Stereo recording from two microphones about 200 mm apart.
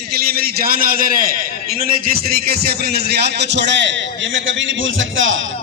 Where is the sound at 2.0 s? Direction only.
50° right (ahead or behind).